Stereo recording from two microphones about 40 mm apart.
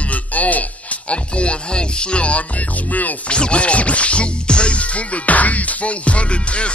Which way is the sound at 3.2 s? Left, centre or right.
Left.